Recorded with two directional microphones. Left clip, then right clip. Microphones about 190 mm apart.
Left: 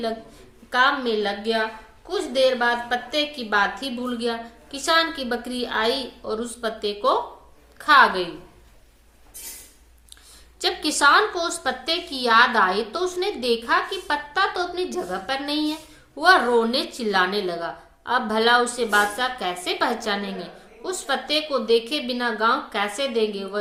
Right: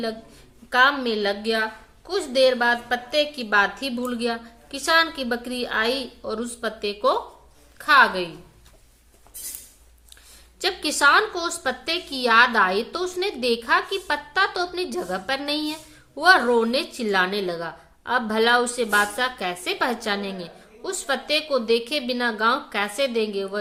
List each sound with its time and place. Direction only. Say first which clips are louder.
0.7 s a woman's voice: right 1 dB; 25° right (ahead or behind)
10.6 s a woman's voice: even; 25° right (ahead or behind)